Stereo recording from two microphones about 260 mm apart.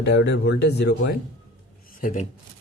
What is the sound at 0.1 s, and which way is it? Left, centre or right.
Speech, left.